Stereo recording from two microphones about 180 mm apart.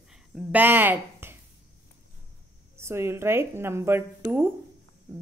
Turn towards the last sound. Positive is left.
turn(degrees=-10)  # may be behind; listen again after turning